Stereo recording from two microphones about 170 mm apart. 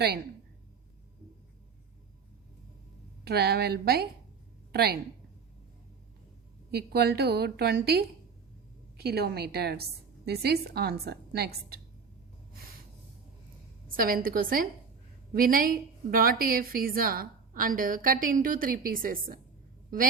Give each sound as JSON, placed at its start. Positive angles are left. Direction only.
{"t": 3.2, "sound": "a woman's voice", "side_deg": -70}
{"t": 6.7, "sound": "a woman's voice", "side_deg": -70}
{"t": 13.9, "sound": "a woman's voice", "side_deg": -60}